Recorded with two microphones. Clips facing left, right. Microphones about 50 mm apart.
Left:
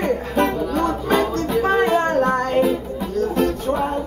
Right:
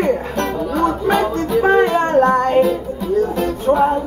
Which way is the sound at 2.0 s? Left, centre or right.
Right.